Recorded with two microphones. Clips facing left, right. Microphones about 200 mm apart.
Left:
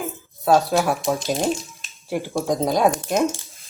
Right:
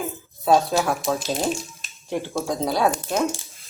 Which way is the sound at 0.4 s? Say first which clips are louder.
Left 1 dB; centre (ahead or behind).